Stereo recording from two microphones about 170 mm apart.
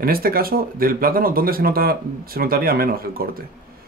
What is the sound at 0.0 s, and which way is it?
Speech, 60° right (ahead or behind).